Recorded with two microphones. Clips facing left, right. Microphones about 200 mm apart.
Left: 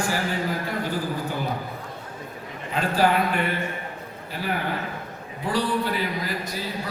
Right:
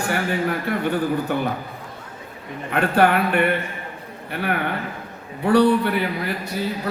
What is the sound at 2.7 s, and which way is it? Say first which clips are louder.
Speech: right 4 dB; 60° right (ahead or behind).